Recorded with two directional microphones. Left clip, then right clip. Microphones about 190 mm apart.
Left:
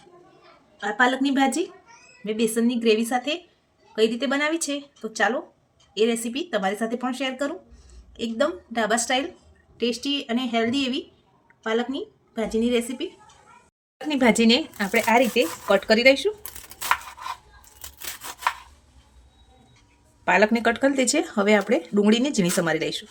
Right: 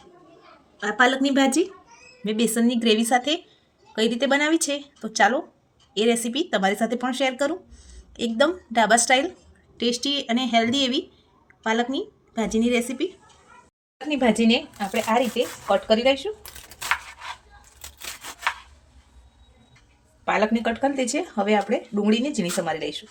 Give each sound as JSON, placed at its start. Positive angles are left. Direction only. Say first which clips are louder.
{"t": 0.8, "sound": "a woman's voice", "louder": "right 1 dB", "side_deg": -15}
{"t": 14.1, "sound": "a woman's voice", "louder": "left 1 dB", "side_deg": 25}
{"t": 15.6, "sound": "speech", "louder": "left 2 dB", "side_deg": 35}
{"t": 20.2, "sound": "speech", "louder": "left 3 dB", "side_deg": 30}